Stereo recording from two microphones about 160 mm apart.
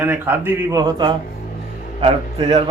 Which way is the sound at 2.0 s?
40° right (ahead or behind).